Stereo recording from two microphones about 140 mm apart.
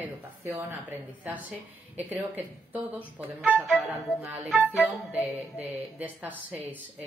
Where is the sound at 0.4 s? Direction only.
15° right (ahead or behind).